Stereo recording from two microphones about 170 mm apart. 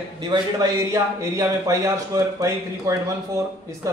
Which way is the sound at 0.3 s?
20° right (ahead or behind).